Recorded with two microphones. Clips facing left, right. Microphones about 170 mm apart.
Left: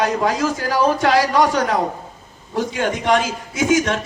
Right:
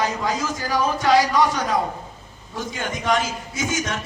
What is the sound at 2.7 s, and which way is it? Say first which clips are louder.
Speech: left 4 dB; 70° left (ahead or behind).